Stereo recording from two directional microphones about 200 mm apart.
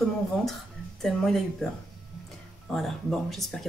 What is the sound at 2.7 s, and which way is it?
Speech, centre (ahead or behind).